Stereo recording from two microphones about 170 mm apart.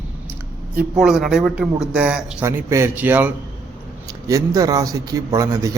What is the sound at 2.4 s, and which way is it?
A man's voice, 15° right (ahead or behind).